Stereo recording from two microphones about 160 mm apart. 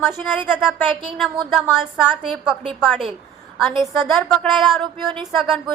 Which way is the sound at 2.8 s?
Centre (ahead or behind).